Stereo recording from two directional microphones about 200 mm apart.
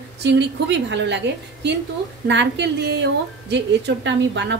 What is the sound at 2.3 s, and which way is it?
A woman's voice, 60° right (ahead or behind).